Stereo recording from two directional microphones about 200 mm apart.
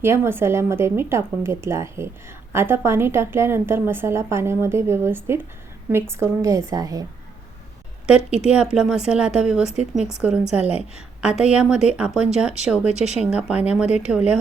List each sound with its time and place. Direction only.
0.0 s a woman's voice: 10° right (ahead or behind)
8.0 s a woman's voice: 5° right (ahead or behind)
12.9 s speech: 35° left (ahead or behind)
13.1 s speech: 5° right (ahead or behind)